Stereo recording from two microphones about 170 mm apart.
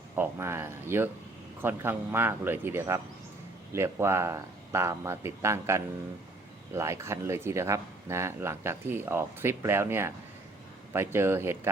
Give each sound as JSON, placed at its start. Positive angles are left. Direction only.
{"t": 0.2, "sound": "speech", "side_deg": -15}